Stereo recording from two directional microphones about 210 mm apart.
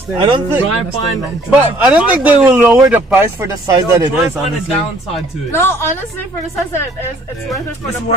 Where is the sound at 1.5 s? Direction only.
5° right (ahead or behind).